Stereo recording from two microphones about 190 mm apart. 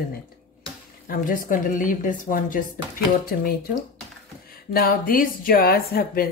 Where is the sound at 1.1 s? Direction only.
45° left (ahead or behind).